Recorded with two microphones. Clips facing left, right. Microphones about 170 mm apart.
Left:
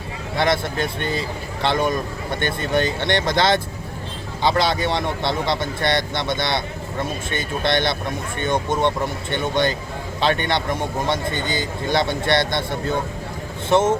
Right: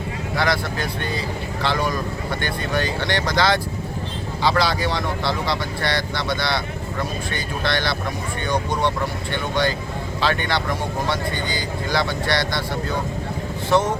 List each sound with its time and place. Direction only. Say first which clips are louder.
0.3 s speech: left 3 dB; 25° left (ahead or behind)